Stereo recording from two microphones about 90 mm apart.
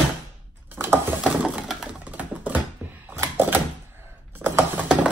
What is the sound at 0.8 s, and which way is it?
Ratchet, 25° right (ahead or behind).